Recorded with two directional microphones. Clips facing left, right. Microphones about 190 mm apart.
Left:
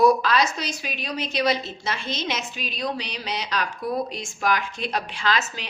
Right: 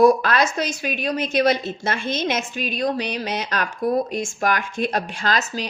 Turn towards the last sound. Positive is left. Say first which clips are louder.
# right 2 dB
turn(degrees=-40)  # may be behind; listen again after turning